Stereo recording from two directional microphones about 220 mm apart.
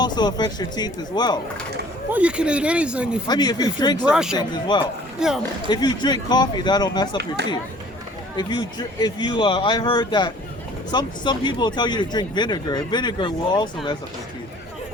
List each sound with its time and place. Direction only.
0.0 s speech: 20° left (ahead or behind)
2.0 s speech: 5° right (ahead or behind)
3.2 s speech: 20° left (ahead or behind)
4.1 s speech: 5° right (ahead or behind)
4.4 s speech: 20° left (ahead or behind)
5.2 s speech: 5° right (ahead or behind)
5.6 s speech: 20° left (ahead or behind)
8.4 s speech: 20° left (ahead or behind)